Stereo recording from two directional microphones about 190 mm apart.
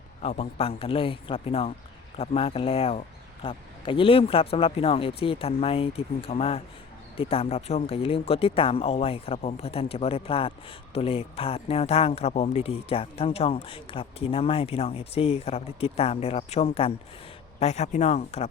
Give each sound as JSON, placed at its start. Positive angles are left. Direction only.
{"t": 0.2, "sound": "speech", "side_deg": 35}